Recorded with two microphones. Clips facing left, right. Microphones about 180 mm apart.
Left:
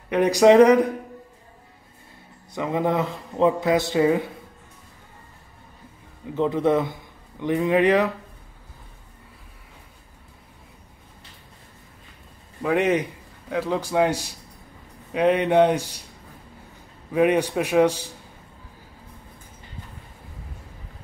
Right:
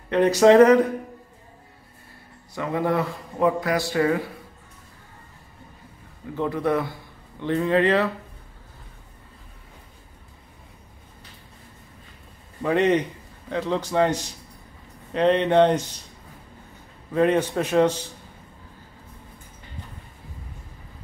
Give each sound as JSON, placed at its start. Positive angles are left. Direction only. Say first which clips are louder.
{"t": 0.1, "sound": "a man's voice", "louder": "even", "side_deg": 15}
{"t": 2.5, "sound": "a man's voice", "louder": "left 1 dB", "side_deg": 20}
{"t": 6.3, "sound": "a man's voice", "louder": "left 3 dB", "side_deg": 20}
{"t": 12.6, "sound": "a man's voice", "louder": "right 1 dB", "side_deg": 10}
{"t": 17.1, "sound": "a man's voice", "louder": "left 1 dB", "side_deg": 10}